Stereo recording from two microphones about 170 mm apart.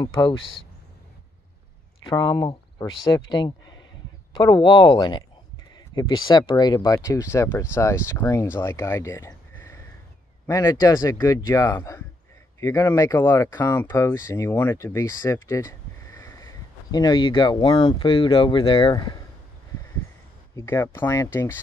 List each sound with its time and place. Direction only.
2.0 s speech: 25° left (ahead or behind)
20.5 s speech: 15° left (ahead or behind)